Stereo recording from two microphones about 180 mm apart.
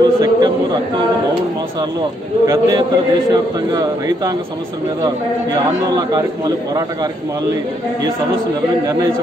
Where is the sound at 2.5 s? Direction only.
20° right (ahead or behind).